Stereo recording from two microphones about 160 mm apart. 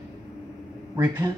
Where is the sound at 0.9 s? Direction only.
20° right (ahead or behind).